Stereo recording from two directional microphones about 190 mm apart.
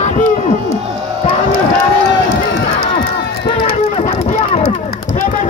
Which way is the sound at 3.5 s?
30° left (ahead or behind).